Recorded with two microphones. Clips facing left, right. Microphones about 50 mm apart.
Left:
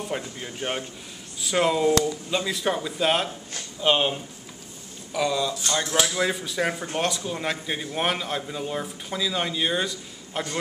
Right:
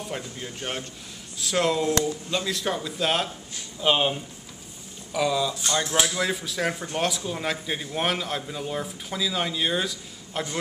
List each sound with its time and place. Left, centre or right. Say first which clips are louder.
0.1 s a man's voice: left 2 dB; centre